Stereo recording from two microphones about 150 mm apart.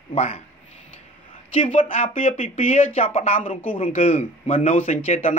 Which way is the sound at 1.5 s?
40° left (ahead or behind).